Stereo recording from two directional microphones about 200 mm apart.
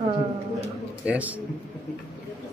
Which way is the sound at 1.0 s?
5° right (ahead or behind).